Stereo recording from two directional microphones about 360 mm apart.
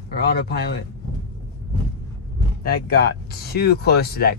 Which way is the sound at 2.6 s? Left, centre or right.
Left.